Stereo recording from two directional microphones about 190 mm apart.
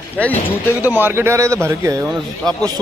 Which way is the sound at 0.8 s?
10° right (ahead or behind).